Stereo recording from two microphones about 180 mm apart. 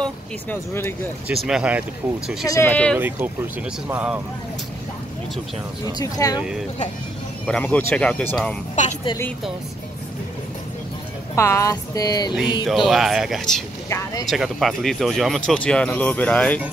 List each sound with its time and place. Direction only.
0.0 s speech: 10° left (ahead or behind)
1.3 s speech: centre (ahead or behind)
2.4 s speech: 20° left (ahead or behind)
2.7 s speech: 5° left (ahead or behind)
3.9 s speech: 5° right (ahead or behind)
5.9 s speech: 20° left (ahead or behind)
7.4 s speech: 5° left (ahead or behind)
8.8 s a woman's voice: 40° left (ahead or behind)
11.3 s speech: 15° left (ahead or behind)
12.6 s speech: centre (ahead or behind)
13.8 s speech: 15° left (ahead or behind)
14.2 s speech: centre (ahead or behind)